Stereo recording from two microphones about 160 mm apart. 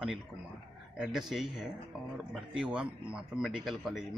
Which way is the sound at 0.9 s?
5° right (ahead or behind).